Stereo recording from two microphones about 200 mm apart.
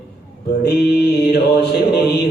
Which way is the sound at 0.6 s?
55° left (ahead or behind).